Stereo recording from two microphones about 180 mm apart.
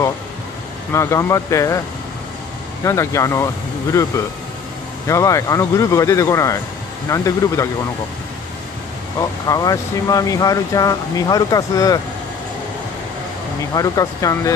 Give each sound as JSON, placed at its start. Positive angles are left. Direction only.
{"t": 0.9, "sound": "speech", "side_deg": 15}
{"t": 2.8, "sound": "speech", "side_deg": 15}
{"t": 9.5, "sound": "speech", "side_deg": 20}
{"t": 13.7, "sound": "speech", "side_deg": 20}